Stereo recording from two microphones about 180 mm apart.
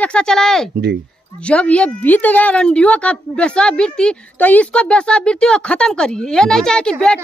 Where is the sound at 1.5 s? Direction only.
5° left (ahead or behind).